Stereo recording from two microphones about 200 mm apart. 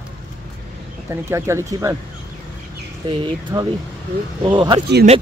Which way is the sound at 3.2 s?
25° right (ahead or behind).